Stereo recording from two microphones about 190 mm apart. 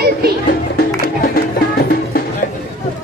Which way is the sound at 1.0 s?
50° left (ahead or behind).